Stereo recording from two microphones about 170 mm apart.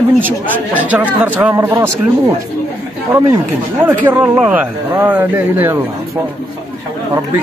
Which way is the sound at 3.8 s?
10° right (ahead or behind).